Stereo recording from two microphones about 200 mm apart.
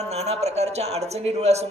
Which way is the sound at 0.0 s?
30° right (ahead or behind).